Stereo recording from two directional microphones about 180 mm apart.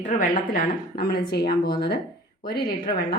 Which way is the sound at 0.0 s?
45° left (ahead or behind).